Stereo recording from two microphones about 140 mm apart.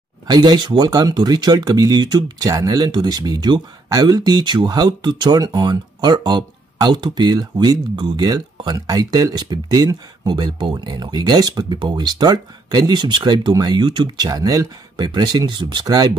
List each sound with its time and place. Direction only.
0.3 s speech: 30° right (ahead or behind)